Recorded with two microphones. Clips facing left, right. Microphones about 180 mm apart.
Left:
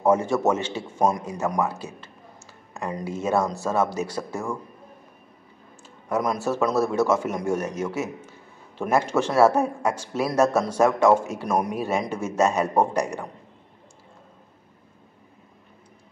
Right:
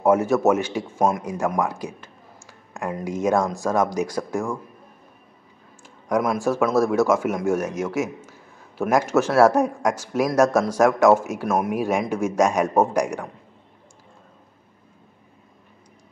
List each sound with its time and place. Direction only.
0.0 s a man's voice: 10° right (ahead or behind)
6.0 s a man's voice: 10° right (ahead or behind)